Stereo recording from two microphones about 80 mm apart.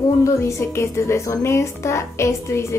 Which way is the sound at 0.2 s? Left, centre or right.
Left.